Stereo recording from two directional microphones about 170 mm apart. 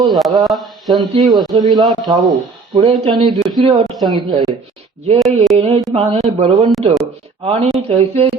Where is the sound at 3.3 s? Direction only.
Centre (ahead or behind).